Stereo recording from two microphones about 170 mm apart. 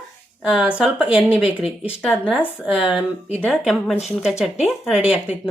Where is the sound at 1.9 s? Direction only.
5° right (ahead or behind).